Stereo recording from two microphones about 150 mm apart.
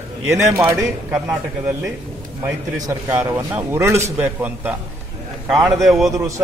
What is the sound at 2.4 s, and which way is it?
A man's voice, 15° right (ahead or behind).